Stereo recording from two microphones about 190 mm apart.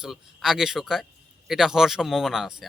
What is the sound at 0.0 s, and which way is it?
Speech, centre (ahead or behind).